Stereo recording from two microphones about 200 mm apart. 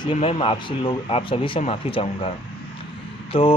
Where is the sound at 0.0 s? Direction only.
30° left (ahead or behind).